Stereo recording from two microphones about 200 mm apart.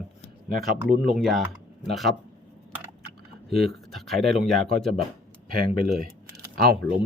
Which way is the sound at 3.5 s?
55° right (ahead or behind).